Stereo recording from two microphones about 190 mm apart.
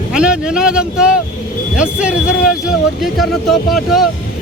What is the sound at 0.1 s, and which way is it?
Speech, 5° right (ahead or behind).